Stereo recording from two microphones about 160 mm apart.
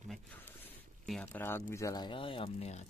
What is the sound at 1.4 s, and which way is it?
Speech, 15° left (ahead or behind).